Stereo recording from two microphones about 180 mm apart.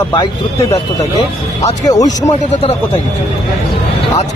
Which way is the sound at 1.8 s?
20° left (ahead or behind).